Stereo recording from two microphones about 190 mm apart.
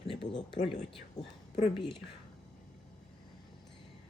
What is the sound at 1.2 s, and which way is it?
Speech, 20° left (ahead or behind).